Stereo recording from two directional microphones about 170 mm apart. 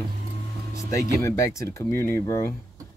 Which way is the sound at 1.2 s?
20° left (ahead or behind).